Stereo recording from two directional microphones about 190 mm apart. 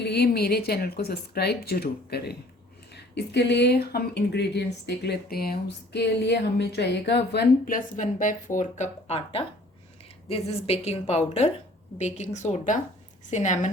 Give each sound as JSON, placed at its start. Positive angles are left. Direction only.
{"t": 0.0, "sound": "a woman's voice", "side_deg": 60}